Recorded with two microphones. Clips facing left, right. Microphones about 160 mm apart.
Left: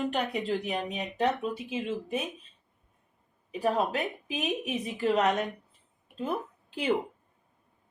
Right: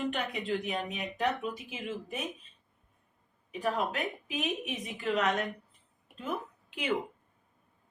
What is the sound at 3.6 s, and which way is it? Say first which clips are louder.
Speech: left 4 dB; 35° left (ahead or behind).